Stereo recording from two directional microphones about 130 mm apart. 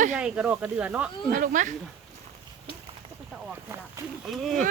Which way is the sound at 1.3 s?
85° right.